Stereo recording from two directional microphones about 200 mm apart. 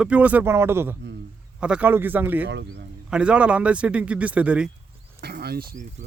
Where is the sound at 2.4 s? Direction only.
60° right (ahead or behind).